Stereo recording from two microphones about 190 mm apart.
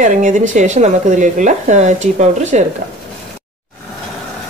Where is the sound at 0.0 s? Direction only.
40° right (ahead or behind).